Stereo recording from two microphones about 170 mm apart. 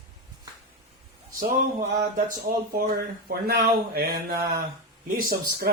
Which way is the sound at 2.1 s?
60° right (ahead or behind).